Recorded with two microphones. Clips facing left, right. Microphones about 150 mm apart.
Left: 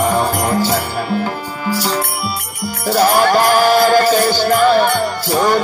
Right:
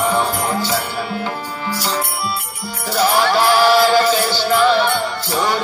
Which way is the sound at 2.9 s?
50° left (ahead or behind).